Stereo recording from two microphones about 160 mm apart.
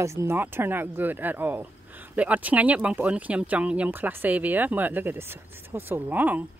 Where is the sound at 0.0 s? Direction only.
15° right (ahead or behind).